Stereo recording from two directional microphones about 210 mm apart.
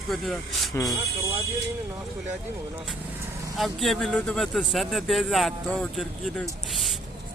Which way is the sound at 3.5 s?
Centre (ahead or behind).